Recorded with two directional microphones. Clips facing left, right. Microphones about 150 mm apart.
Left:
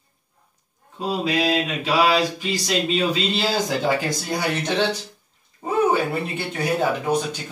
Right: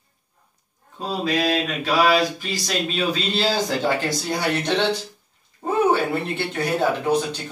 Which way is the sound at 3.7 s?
5° left (ahead or behind).